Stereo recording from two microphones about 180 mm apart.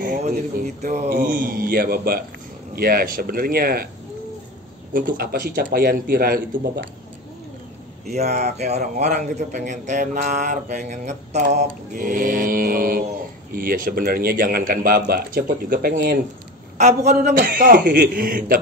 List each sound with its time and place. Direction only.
0.4 s a man's voice: 40° right (ahead or behind)
1.1 s a man's voice: 50° right (ahead or behind)
4.9 s a man's voice: 55° right (ahead or behind)
8.1 s a man's voice: 40° right (ahead or behind); by 16.2 s 55° right (ahead or behind)
16.7 s a man's voice: 40° right (ahead or behind)
17.2 s speech: 50° right (ahead or behind)